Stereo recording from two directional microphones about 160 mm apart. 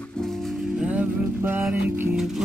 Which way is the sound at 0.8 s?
10° right (ahead or behind).